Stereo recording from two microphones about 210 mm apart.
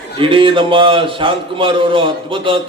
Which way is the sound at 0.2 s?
25° right (ahead or behind).